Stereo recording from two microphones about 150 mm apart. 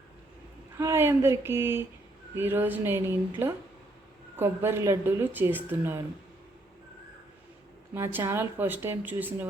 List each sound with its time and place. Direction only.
0.8 s speech: 15° right (ahead or behind)
7.9 s speech: 15° right (ahead or behind)